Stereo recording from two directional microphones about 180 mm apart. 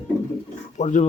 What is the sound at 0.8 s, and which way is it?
Speech, 40° left (ahead or behind).